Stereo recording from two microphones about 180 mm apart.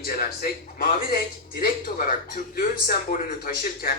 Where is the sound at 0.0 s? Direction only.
55° left (ahead or behind).